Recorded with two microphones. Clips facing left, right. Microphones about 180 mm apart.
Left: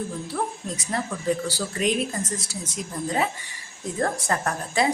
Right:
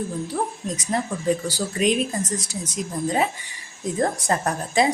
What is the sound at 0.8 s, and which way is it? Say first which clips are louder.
A woman's voice: right 3 dB; 20° right (ahead or behind).